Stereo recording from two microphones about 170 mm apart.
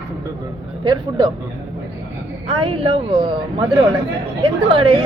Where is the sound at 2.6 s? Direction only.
30° right (ahead or behind).